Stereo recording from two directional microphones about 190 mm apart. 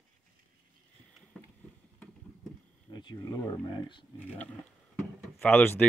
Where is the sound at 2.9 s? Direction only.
20° left (ahead or behind).